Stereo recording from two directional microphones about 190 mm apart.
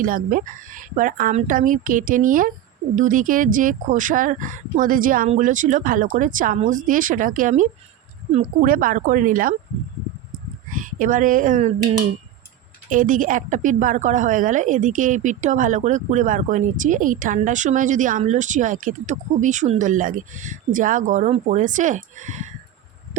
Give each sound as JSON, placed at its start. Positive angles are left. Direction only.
{"t": 0.0, "sound": "speech", "side_deg": -45}
{"t": 10.7, "sound": "speech", "side_deg": -45}
{"t": 12.9, "sound": "a woman's voice", "side_deg": -45}